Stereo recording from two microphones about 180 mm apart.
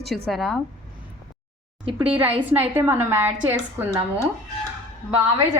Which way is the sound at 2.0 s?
10° right (ahead or behind).